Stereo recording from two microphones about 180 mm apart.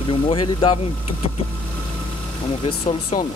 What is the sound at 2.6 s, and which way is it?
Speech, 30° left (ahead or behind).